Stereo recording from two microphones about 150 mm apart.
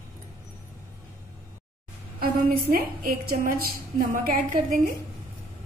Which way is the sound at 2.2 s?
80° right.